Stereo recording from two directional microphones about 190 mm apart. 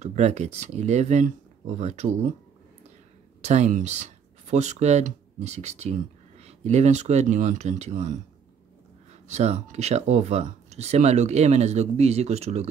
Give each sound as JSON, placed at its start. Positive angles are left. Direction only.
{"t": 0.0, "sound": "speech", "side_deg": -35}
{"t": 3.4, "sound": "speech", "side_deg": -40}
{"t": 9.3, "sound": "speech", "side_deg": -35}